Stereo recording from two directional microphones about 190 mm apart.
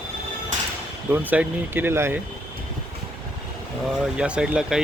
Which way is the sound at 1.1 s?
10° right (ahead or behind).